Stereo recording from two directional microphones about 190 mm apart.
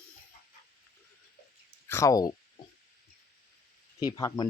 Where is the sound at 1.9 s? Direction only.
15° left (ahead or behind).